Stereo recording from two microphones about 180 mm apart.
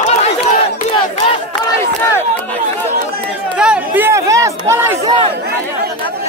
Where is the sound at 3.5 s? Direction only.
5° right (ahead or behind).